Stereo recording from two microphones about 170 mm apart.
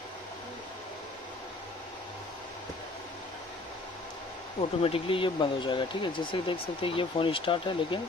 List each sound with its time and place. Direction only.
4.6 s speech: 35° left (ahead or behind)